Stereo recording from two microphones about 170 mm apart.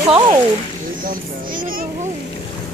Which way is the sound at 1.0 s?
55° right (ahead or behind).